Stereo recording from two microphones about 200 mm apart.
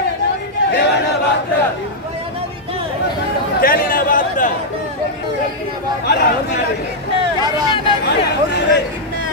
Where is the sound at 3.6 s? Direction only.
45° left (ahead or behind).